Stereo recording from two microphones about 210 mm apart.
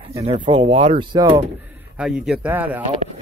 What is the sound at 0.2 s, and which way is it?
Speech, 20° right (ahead or behind).